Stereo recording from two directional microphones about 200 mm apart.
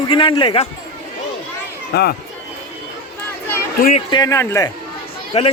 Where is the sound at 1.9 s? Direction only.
55° left (ahead or behind).